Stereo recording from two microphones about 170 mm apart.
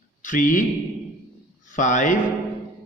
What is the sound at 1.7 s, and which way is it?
Speech, 50° left (ahead or behind).